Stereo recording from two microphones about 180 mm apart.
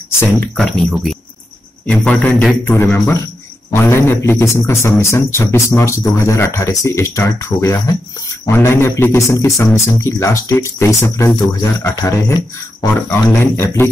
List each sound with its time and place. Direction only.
0.6 s a man's voice: 5° left (ahead or behind)